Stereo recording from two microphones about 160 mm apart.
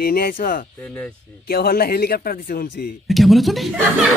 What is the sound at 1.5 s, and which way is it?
Speech, 75° left (ahead or behind).